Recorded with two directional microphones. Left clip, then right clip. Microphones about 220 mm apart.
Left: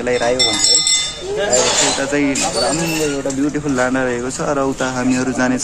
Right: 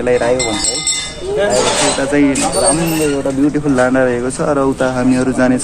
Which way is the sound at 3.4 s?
10° left (ahead or behind).